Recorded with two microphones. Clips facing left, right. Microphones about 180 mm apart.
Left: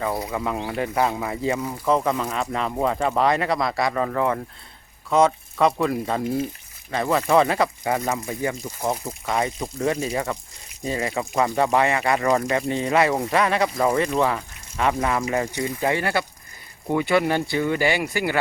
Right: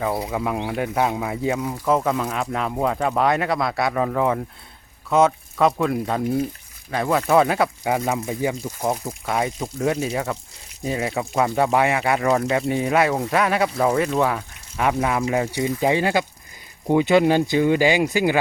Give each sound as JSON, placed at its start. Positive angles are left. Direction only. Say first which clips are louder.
{"t": 0.0, "sound": "speech", "louder": "right 2 dB", "side_deg": -5}